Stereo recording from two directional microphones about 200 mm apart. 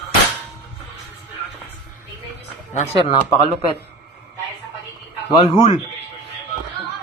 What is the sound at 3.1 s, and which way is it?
Speech, 20° left (ahead or behind).